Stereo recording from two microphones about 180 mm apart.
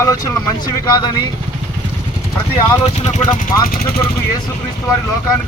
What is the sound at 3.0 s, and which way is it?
Speech, 40° left (ahead or behind).